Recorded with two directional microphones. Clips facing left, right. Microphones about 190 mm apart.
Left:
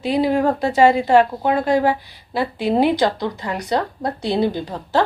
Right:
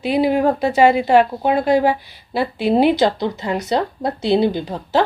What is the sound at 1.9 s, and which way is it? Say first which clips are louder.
A woman's voice: right 1 dB; 25° right (ahead or behind).